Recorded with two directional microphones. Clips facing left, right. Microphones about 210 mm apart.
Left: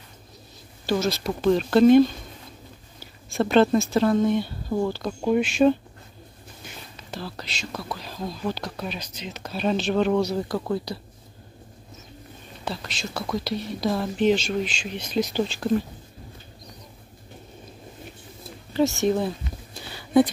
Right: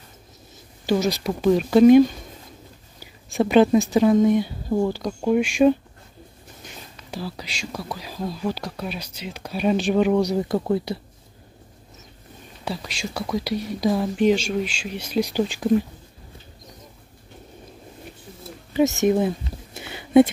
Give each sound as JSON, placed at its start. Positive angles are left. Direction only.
{"t": 0.8, "sound": "speech", "side_deg": -15}
{"t": 3.4, "sound": "speech", "side_deg": -10}
{"t": 7.1, "sound": "speech", "side_deg": -10}
{"t": 12.6, "sound": "speech", "side_deg": -10}
{"t": 18.7, "sound": "speech", "side_deg": -15}
{"t": 19.4, "sound": "a sound", "side_deg": -20}